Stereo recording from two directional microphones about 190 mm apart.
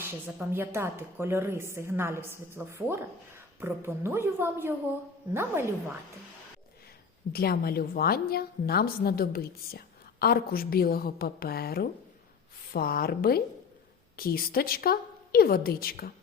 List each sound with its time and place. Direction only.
0.0 s speech: 10° right (ahead or behind)
7.3 s a woman's voice: 55° left (ahead or behind)